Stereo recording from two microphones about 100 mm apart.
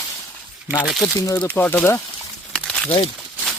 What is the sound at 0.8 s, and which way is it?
Speech, 5° right (ahead or behind).